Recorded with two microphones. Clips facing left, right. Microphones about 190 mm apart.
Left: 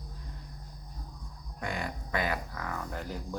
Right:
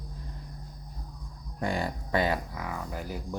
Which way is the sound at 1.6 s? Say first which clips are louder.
Right 5 dB; 35° right (ahead or behind).